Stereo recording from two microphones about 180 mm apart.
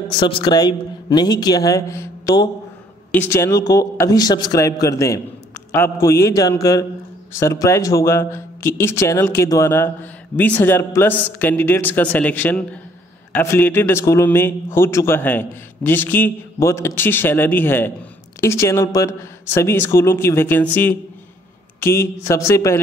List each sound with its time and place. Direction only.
0.2 s a man's voice: 25° left (ahead or behind)